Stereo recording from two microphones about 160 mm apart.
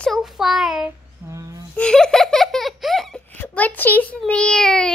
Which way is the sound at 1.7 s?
5° left (ahead or behind).